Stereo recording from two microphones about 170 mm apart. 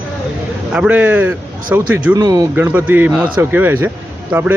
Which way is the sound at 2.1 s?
20° right (ahead or behind).